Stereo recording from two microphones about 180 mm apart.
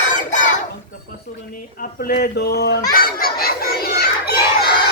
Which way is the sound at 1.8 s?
55° left (ahead or behind).